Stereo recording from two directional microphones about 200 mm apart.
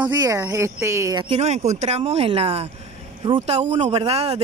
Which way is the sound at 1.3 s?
35° right (ahead or behind).